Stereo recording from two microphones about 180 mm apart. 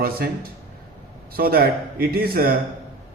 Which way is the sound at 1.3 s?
55° right (ahead or behind).